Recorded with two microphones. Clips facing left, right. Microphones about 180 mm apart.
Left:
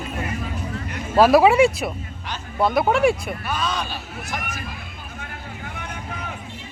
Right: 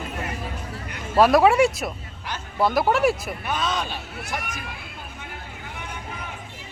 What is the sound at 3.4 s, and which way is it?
Speech, 20° right (ahead or behind).